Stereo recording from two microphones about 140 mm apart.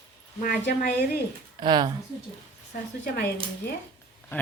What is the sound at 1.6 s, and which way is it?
Speech, 30° right (ahead or behind).